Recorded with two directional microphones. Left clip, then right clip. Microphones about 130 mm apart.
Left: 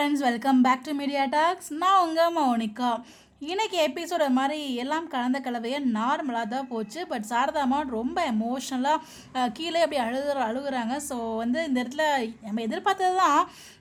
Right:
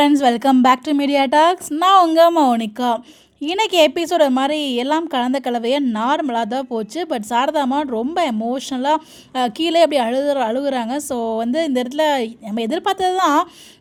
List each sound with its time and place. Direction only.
0.0 s a woman's voice: 70° right (ahead or behind)
2.4 s a woman's voice: 55° right (ahead or behind)